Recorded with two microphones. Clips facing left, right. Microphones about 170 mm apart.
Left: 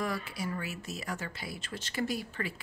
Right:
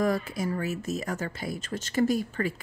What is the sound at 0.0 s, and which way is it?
Speech, 45° right (ahead or behind).